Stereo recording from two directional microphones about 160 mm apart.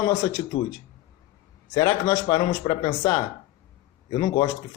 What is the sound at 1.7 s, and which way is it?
A man's voice, 25° left (ahead or behind).